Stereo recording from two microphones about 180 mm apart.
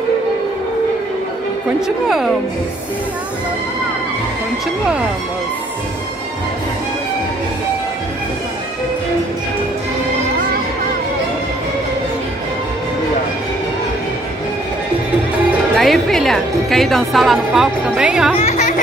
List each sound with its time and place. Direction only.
2.0 s a woman's voice: centre (ahead or behind)
15.7 s a woman's voice: centre (ahead or behind)
18.3 s speech: 35° left (ahead or behind)